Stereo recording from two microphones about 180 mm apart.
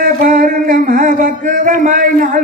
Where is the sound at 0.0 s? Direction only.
50° right (ahead or behind).